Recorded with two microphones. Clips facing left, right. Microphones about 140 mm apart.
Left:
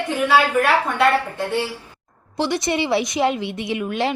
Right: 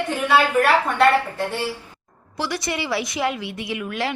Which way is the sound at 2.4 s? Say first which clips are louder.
Left 5 dB; 25° left (ahead or behind).